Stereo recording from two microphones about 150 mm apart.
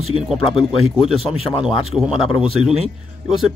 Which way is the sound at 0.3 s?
5° right (ahead or behind).